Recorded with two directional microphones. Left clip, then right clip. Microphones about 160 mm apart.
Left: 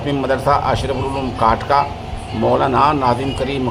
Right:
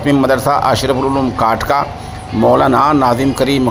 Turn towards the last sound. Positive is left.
turn(degrees=-30)  # may be behind; listen again after turning